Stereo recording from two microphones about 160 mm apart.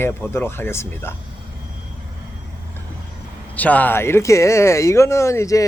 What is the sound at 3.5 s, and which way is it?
Speech, 10° left (ahead or behind).